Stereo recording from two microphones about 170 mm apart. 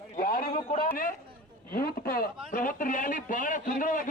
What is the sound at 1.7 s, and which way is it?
A man's voice, 60° left (ahead or behind).